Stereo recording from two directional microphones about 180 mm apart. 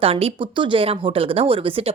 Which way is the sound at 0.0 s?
30° right (ahead or behind).